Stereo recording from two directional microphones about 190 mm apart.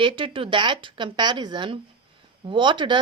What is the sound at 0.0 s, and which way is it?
Speech, 25° right (ahead or behind).